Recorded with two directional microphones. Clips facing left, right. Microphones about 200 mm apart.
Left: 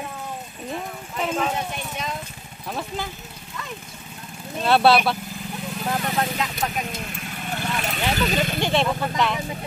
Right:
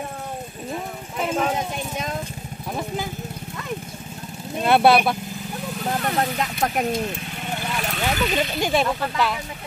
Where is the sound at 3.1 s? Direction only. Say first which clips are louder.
Right 7 dB; 50° right (ahead or behind).